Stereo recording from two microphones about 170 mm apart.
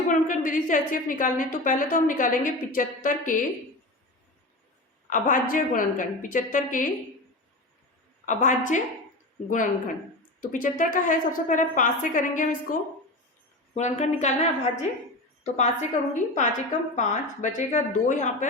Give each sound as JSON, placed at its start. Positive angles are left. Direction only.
{"t": 0.1, "sound": "a woman's voice", "side_deg": 50}
{"t": 5.0, "sound": "a woman's voice", "side_deg": 50}
{"t": 8.2, "sound": "a woman's voice", "side_deg": 45}
{"t": 13.7, "sound": "a woman's voice", "side_deg": 40}